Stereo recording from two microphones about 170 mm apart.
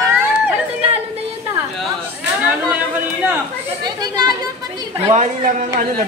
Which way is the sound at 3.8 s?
25° right (ahead or behind).